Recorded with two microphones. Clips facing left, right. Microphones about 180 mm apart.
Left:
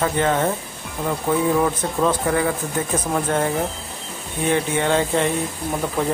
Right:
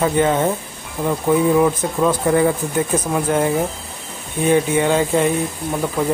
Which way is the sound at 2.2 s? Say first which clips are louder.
Right 5 dB; 25° right (ahead or behind).